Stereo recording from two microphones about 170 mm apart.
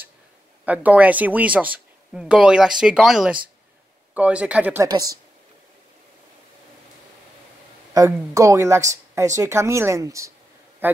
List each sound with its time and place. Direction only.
0.7 s speech: 10° right (ahead or behind)
4.8 s a woman's voice: 20° right (ahead or behind)
7.9 s speech: 20° right (ahead or behind)